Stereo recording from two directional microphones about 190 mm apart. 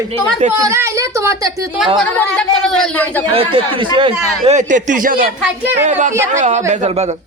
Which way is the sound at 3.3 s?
25° right (ahead or behind).